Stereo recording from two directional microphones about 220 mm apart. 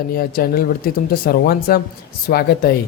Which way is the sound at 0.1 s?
45° left (ahead or behind).